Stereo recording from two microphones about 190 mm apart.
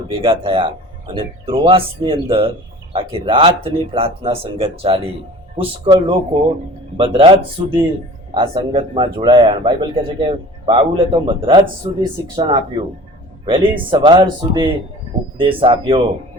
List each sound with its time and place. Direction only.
0.1 s a man's voice: 30° right (ahead or behind)